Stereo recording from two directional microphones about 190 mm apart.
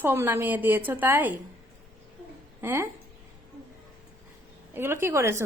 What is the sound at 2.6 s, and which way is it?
Speech, 15° right (ahead or behind).